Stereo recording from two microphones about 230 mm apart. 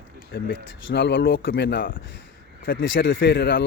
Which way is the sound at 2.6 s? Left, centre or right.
Left.